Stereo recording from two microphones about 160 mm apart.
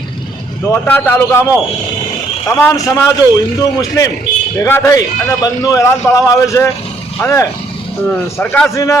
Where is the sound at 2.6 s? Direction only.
15° left (ahead or behind).